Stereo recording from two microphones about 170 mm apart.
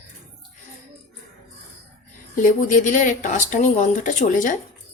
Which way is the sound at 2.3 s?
45° left (ahead or behind).